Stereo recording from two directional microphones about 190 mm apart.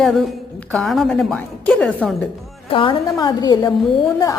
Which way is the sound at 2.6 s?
25° left (ahead or behind).